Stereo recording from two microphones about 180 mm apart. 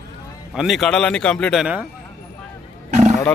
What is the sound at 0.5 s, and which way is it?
A man's voice, centre (ahead or behind).